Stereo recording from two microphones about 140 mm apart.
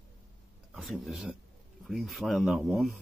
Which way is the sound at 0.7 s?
Centre (ahead or behind).